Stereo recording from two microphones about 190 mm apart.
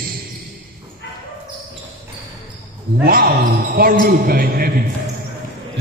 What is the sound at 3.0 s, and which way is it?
A man's voice, 50° right (ahead or behind).